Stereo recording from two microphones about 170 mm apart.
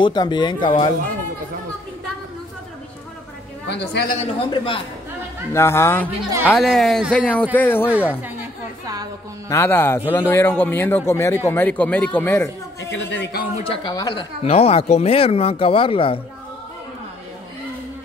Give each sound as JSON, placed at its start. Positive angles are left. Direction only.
{"t": 0.0, "sound": "speech", "side_deg": 25}
{"t": 3.6, "sound": "a man's voice", "side_deg": 90}
{"t": 4.5, "sound": "speech", "side_deg": 30}
{"t": 5.5, "sound": "speech", "side_deg": 15}
{"t": 6.4, "sound": "speech", "side_deg": 0}
{"t": 9.5, "sound": "speech", "side_deg": 15}
{"t": 12.9, "sound": "a man's voice", "side_deg": 90}
{"t": 13.7, "sound": "speech", "side_deg": 25}